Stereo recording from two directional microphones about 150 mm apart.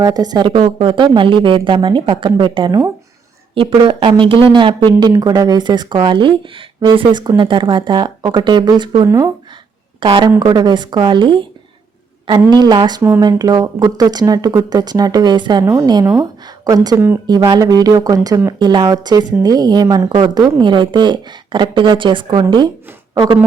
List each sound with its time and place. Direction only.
0.0 s speech: 25° right (ahead or behind)
10.0 s speech: 35° right (ahead or behind)
12.5 s speech: 30° right (ahead or behind)
13.0 s speech: 15° right (ahead or behind)
13.2 s speech: 25° right (ahead or behind)